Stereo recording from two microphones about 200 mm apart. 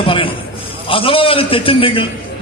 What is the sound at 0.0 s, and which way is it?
A man's voice, 25° left (ahead or behind).